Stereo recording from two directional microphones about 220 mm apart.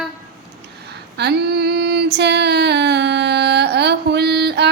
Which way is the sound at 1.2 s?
50° right (ahead or behind).